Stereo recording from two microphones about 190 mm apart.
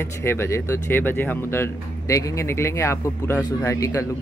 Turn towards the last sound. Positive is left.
turn(degrees=15)  # may be behind; listen again after turning